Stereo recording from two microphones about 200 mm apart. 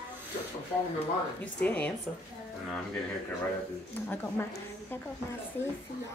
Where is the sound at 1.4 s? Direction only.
5° left (ahead or behind).